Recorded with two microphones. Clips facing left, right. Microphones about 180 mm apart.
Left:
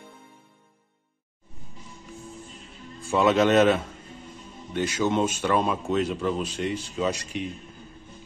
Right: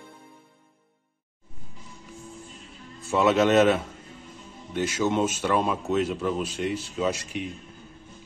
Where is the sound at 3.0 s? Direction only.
5° right (ahead or behind).